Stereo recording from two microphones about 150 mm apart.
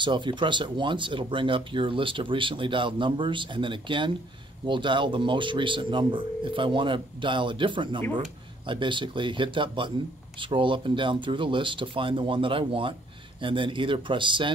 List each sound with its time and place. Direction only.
0.0 s speech: 30° right (ahead or behind)